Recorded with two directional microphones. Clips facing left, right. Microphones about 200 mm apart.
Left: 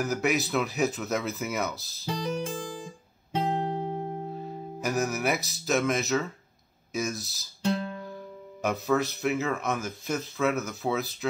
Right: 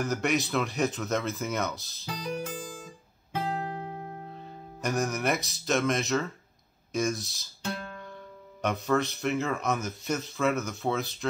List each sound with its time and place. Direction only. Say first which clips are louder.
0.0 s speech: left 1 dB; 5° left (ahead or behind)
3.3 s guitar: left 4 dB; 25° left (ahead or behind)
4.3 s music: left 7 dB; 5° left (ahead or behind)
4.8 s speech: left 1 dB; 5° left (ahead or behind)
7.6 s guitar: left 7 dB; 25° left (ahead or behind)
8.6 s speech: left 1 dB; 5° left (ahead or behind)